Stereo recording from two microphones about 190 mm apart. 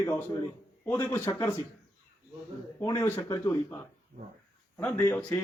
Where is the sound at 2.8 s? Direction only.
15° left (ahead or behind).